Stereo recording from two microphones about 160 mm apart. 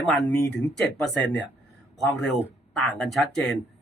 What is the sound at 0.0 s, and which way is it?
Speech, centre (ahead or behind).